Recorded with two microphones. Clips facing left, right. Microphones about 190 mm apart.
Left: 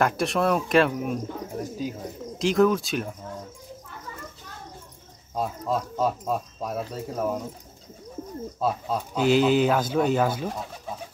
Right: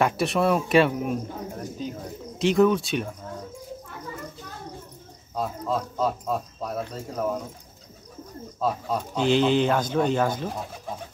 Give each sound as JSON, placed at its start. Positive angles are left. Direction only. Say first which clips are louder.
{"t": 0.0, "sound": "speech", "louder": "right 1 dB", "side_deg": 0}
{"t": 5.4, "sound": "speech", "louder": "even", "side_deg": 10}
{"t": 8.5, "sound": "speech", "louder": "right 1 dB", "side_deg": 5}